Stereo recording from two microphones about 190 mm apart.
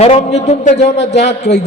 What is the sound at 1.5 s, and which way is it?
Speech, 60° left (ahead or behind).